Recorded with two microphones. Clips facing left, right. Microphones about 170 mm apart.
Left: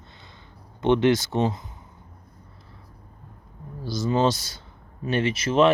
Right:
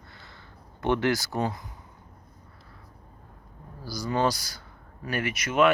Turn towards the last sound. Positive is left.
turn(degrees=30)  # may be behind; listen again after turning